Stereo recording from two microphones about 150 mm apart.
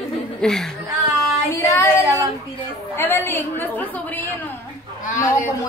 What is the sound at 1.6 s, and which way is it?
A woman's voice, 15° left (ahead or behind).